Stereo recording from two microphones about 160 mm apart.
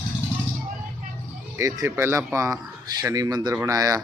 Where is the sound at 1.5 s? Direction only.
20° right (ahead or behind).